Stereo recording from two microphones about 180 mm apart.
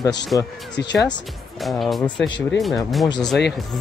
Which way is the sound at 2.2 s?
25° left (ahead or behind).